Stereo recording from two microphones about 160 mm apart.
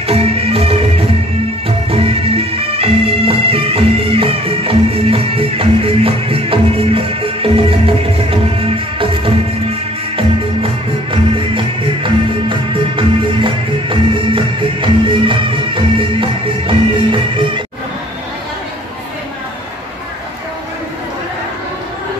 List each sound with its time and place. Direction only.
0.0 s music: 40° right (ahead or behind)